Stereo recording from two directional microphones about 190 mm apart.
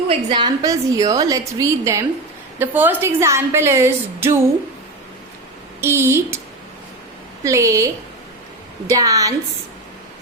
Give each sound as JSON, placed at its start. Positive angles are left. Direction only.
{"t": 0.1, "sound": "a woman's voice", "side_deg": -25}
{"t": 5.8, "sound": "a woman's voice", "side_deg": -15}
{"t": 7.4, "sound": "a woman's voice", "side_deg": -15}
{"t": 8.9, "sound": "a woman's voice", "side_deg": -20}